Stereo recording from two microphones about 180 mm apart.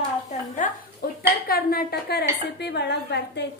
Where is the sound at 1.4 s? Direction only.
55° left (ahead or behind).